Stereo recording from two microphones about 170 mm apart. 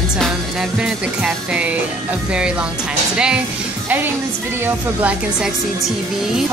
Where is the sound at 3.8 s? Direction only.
10° right (ahead or behind).